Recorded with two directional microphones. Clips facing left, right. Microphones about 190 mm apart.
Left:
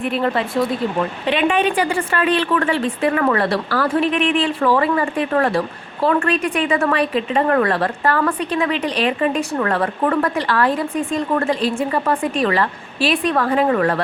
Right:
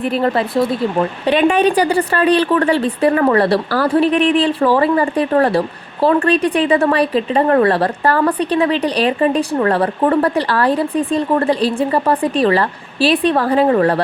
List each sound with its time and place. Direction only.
0.0 s speech: 40° right (ahead or behind)